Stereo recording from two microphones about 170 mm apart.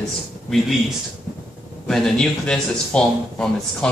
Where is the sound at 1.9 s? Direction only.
5° left (ahead or behind).